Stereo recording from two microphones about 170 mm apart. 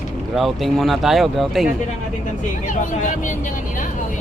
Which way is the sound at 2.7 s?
50° left (ahead or behind).